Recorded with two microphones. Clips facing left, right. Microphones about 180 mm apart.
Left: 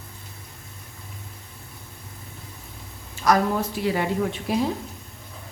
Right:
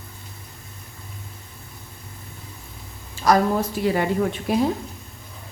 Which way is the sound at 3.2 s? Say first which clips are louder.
Right 2 dB; 40° right (ahead or behind).